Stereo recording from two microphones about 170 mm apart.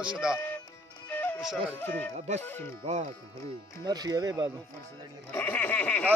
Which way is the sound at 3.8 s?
25° right (ahead or behind).